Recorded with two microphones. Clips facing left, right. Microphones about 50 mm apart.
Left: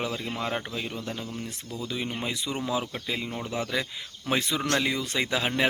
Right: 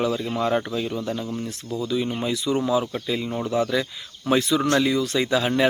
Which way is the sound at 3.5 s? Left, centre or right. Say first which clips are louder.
Right 7 dB; centre.